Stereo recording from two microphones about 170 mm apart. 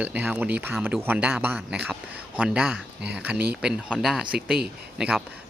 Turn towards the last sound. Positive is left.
turn(degrees=-5)  # may be behind; listen again after turning